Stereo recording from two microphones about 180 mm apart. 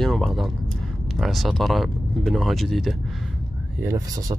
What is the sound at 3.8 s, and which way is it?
Speech, 20° right (ahead or behind).